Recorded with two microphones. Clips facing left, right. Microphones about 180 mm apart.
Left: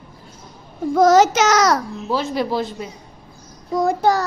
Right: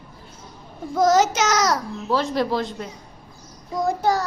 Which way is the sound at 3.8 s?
70° left (ahead or behind).